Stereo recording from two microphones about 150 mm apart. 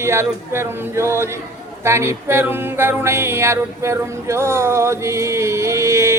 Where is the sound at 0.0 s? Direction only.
15° right (ahead or behind).